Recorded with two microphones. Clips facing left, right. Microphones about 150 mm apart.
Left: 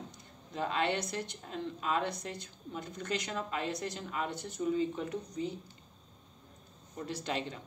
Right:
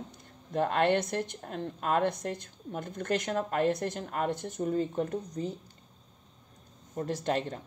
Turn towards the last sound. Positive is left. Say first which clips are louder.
# right 6 dB
turn(degrees=-45)  # may be behind; listen again after turning